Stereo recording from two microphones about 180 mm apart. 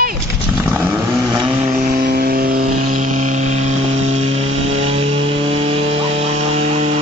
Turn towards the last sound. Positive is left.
turn(degrees=-35)  # may be behind; listen again after turning